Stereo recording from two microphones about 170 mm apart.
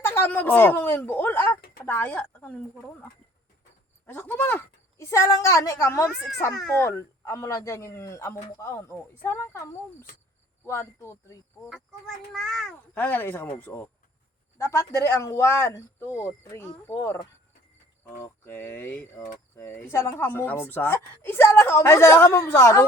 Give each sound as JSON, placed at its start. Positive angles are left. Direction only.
{"t": 0.0, "sound": "a woman's voice", "side_deg": 15}
{"t": 6.1, "sound": "a child's voice", "side_deg": -5}
{"t": 6.7, "sound": "a woman's voice", "side_deg": 15}
{"t": 11.7, "sound": "a woman's voice", "side_deg": 0}
{"t": 18.2, "sound": "a woman's voice", "side_deg": 10}